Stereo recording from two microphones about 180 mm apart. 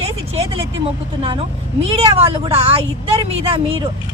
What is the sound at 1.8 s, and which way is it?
A woman's voice, 30° right (ahead or behind).